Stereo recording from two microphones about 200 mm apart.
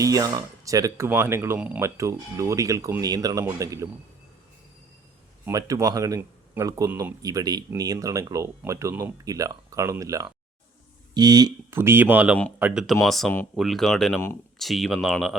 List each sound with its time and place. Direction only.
0.0 s speech: 15° right (ahead or behind)
5.5 s speech: 15° right (ahead or behind); by 15.4 s centre (ahead or behind)